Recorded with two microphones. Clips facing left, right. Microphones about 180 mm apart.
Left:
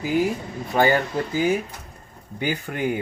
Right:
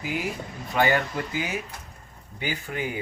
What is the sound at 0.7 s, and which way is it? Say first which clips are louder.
Speech: left 4 dB; 35° left (ahead or behind).